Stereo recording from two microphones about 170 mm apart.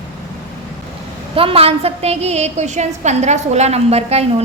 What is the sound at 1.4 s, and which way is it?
A woman's voice, 35° right (ahead or behind).